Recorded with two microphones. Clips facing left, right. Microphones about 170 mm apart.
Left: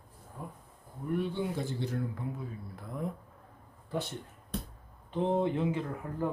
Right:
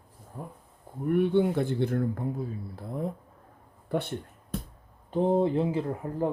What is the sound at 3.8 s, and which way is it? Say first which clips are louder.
Speech: right 6 dB; 60° right (ahead or behind).